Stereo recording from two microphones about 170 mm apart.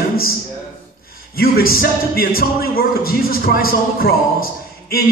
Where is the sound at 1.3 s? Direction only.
60° left (ahead or behind).